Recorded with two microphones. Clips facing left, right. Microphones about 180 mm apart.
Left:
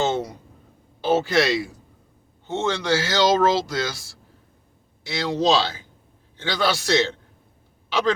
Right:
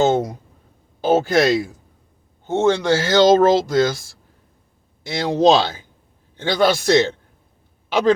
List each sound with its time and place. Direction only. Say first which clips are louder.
0.0 s speech: right 6 dB; 45° right (ahead or behind)